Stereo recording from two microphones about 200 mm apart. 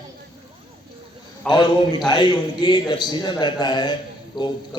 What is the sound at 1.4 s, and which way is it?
A man's voice, 20° left (ahead or behind).